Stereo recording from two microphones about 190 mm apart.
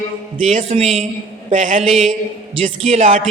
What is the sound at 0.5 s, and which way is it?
Speech, 35° right (ahead or behind).